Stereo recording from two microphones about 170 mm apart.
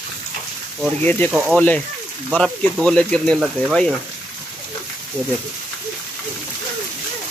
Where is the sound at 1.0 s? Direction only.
10° left (ahead or behind).